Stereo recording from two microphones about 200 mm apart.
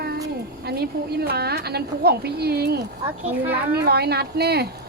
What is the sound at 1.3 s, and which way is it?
A woman's voice, 50° right (ahead or behind).